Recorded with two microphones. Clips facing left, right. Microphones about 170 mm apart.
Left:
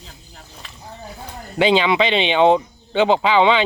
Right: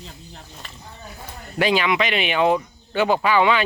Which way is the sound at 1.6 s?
25° left (ahead or behind).